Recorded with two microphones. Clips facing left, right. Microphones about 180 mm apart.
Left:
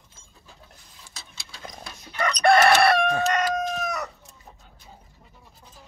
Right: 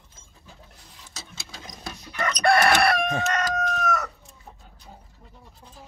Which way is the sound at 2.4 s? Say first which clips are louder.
Left 3 dB; 25° left (ahead or behind).